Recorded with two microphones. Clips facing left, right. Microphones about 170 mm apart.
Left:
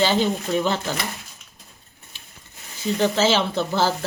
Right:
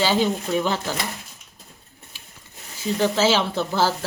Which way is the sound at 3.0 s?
5° right (ahead or behind).